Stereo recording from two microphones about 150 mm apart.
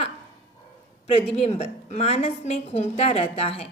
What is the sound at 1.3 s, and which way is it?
A woman's voice, 45° left (ahead or behind).